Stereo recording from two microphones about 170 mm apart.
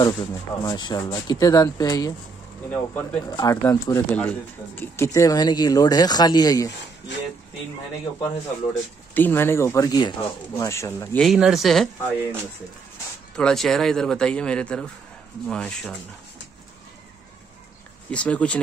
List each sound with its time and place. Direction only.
0.0 s speech: 25° left (ahead or behind)
2.7 s speech: 10° left (ahead or behind)
3.3 s speech: 20° left (ahead or behind)
4.1 s speech: 10° left (ahead or behind)
9.1 s speech: 10° left (ahead or behind)
11.1 s speech: centre (ahead or behind)
13.4 s speech: 5° left (ahead or behind)
18.1 s speech: 5° left (ahead or behind)